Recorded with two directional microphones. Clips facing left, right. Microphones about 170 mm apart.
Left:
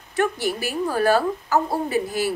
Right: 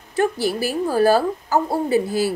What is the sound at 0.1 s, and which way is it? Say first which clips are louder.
A woman's voice: right 3 dB; 30° right (ahead or behind).